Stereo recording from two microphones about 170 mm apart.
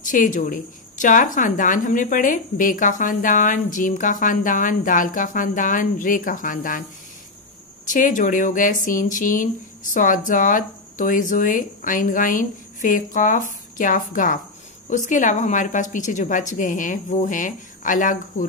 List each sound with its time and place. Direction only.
0.0 s a woman's voice: 50° left (ahead or behind)
7.8 s a woman's voice: 50° left (ahead or behind)